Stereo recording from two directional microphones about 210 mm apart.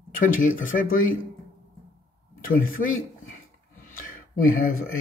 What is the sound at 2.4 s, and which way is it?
Speech, 40° left (ahead or behind).